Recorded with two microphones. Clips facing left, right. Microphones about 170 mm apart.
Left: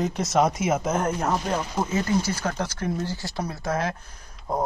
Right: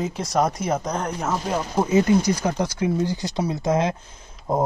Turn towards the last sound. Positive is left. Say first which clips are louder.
# right 4 dB
turn(degrees=-20)  # may be behind; listen again after turning